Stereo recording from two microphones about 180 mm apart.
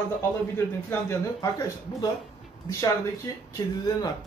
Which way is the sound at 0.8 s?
15° left (ahead or behind).